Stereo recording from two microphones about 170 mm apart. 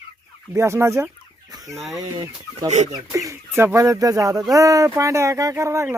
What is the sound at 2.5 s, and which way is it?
Speech, 40° right (ahead or behind).